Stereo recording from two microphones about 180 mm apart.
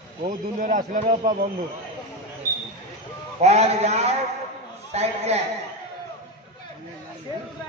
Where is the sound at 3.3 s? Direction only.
35° right (ahead or behind).